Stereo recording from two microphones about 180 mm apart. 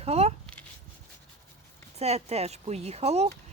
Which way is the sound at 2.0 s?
35° right (ahead or behind).